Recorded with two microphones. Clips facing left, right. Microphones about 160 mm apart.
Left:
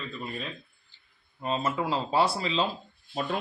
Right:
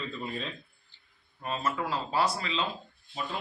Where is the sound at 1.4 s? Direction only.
20° left (ahead or behind).